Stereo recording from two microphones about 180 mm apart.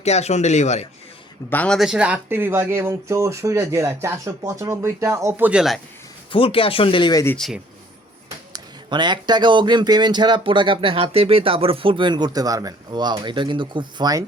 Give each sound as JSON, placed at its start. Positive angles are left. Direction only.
{"t": 0.0, "sound": "speech", "side_deg": 35}
{"t": 1.5, "sound": "speech", "side_deg": 5}
{"t": 6.3, "sound": "speech", "side_deg": 30}
{"t": 7.3, "sound": "speech", "side_deg": 0}
{"t": 8.5, "sound": "speech", "side_deg": -25}